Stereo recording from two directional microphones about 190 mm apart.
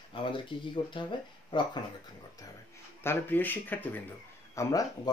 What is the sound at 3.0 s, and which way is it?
Speech, 10° left (ahead or behind).